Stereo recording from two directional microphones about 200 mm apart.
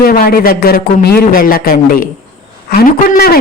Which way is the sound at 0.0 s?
45° left (ahead or behind).